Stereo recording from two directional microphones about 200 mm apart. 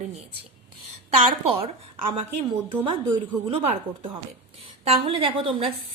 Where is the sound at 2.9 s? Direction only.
25° right (ahead or behind).